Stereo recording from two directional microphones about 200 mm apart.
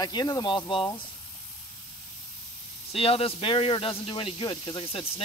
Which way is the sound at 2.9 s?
30° left (ahead or behind).